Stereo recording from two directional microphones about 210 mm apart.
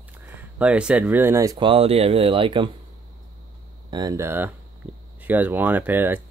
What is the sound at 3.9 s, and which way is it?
Speech, 20° right (ahead or behind).